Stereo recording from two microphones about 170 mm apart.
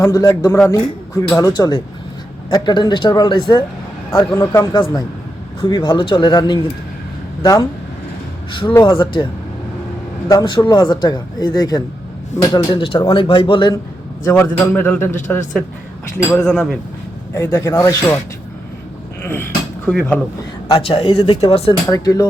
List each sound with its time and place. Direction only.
0.0 s speech: 20° left (ahead or behind)
4.4 s a man's voice: 15° left (ahead or behind)
4.7 s speech: 30° left (ahead or behind)
8.7 s speech: 25° left (ahead or behind)
14.3 s a man's voice: 10° left (ahead or behind)
16.1 s speech: 5° left (ahead or behind)
17.3 s a man's voice: 15° left (ahead or behind)
19.2 s speech: 10° left (ahead or behind)
20.7 s speech: 30° left (ahead or behind)
21.8 s speech: 20° left (ahead or behind)